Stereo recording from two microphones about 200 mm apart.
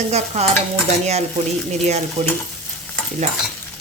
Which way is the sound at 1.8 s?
35° right (ahead or behind).